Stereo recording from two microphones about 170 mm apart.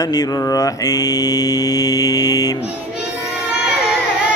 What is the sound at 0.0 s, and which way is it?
Mantra, 20° left (ahead or behind).